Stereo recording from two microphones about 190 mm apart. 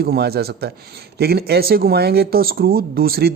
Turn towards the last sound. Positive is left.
turn(degrees=-50)  # may be behind; listen again after turning